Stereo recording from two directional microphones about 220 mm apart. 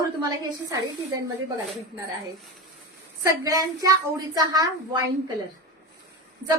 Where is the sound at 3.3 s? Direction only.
15° right (ahead or behind).